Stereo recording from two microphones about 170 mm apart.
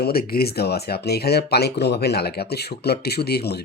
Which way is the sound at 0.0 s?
65° left (ahead or behind).